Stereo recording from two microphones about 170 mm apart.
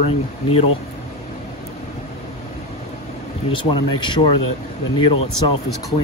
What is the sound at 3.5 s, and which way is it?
Speech, 30° left (ahead or behind).